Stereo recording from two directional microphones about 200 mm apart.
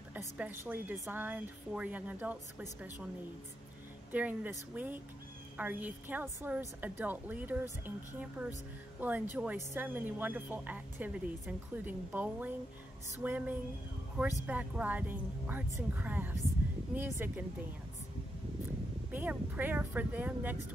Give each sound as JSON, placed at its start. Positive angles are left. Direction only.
{"t": 0.4, "sound": "speech", "side_deg": -10}
{"t": 4.1, "sound": "speech", "side_deg": -10}
{"t": 19.1, "sound": "speech", "side_deg": -10}